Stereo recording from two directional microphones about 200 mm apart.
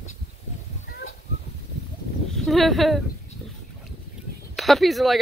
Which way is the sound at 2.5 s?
Centre (ahead or behind).